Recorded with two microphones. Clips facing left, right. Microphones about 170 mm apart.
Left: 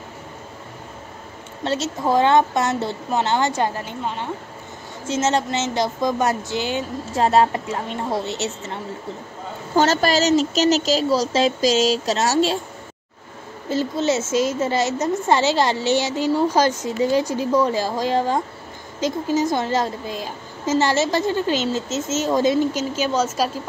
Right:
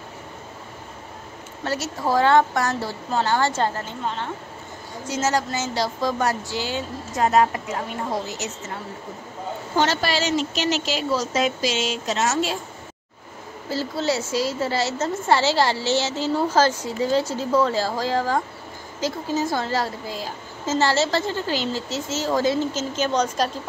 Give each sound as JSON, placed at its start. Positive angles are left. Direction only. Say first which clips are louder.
{"t": 1.6, "sound": "a woman's voice", "louder": "left 3 dB", "side_deg": 25}
{"t": 5.0, "sound": "a woman's voice", "louder": "left 3 dB", "side_deg": 25}
{"t": 9.8, "sound": "speech", "louder": "left 5 dB", "side_deg": 40}
{"t": 13.7, "sound": "a woman's voice", "louder": "left 4 dB", "side_deg": 20}